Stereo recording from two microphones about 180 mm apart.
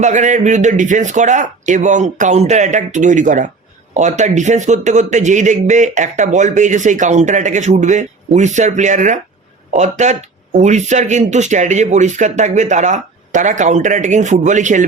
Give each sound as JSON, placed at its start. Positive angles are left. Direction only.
{"t": 0.0, "sound": "speech", "side_deg": -40}